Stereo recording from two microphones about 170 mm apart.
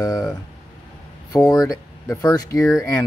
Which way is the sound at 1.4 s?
20° left (ahead or behind).